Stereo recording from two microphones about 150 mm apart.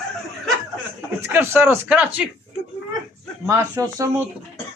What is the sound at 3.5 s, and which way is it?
Speech, 20° right (ahead or behind).